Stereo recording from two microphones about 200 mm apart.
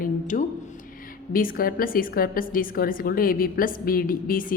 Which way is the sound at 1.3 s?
45° left (ahead or behind).